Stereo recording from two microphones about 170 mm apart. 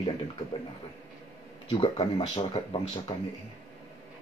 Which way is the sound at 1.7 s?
30° left (ahead or behind).